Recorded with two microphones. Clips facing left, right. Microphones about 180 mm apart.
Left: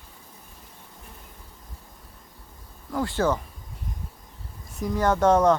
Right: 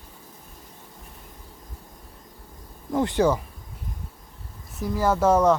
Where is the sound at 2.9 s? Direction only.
20° right (ahead or behind).